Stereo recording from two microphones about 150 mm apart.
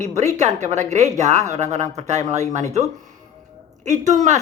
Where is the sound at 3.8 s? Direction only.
50° right (ahead or behind).